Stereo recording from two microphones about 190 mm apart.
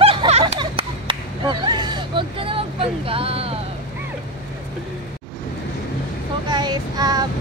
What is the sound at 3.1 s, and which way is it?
Speech, 30° right (ahead or behind).